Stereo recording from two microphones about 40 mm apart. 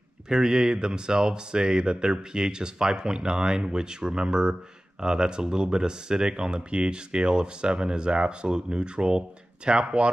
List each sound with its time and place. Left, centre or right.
0.3 s speech: centre